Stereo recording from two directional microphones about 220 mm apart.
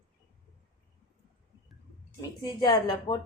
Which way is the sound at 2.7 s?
20° left (ahead or behind).